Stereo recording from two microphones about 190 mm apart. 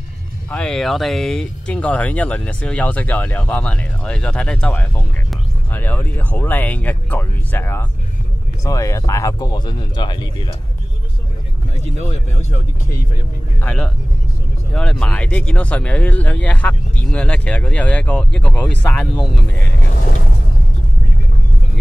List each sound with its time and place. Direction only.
0.5 s speech: 5° left (ahead or behind); by 10.5 s 25° left (ahead or behind)
13.6 s speech: 5° left (ahead or behind)